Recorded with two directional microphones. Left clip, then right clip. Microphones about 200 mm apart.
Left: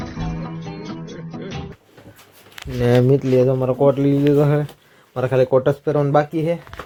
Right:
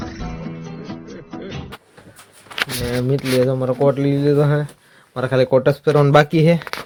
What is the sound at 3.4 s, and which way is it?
Speech, centre (ahead or behind).